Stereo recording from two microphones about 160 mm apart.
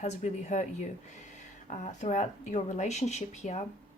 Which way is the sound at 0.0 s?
45° left (ahead or behind).